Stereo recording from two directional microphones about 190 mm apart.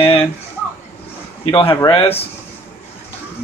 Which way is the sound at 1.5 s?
30° left (ahead or behind).